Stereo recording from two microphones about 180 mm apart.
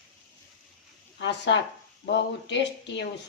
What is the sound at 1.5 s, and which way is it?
Speech, 90° left.